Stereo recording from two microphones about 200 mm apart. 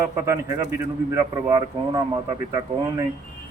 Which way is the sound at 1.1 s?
20° right (ahead or behind).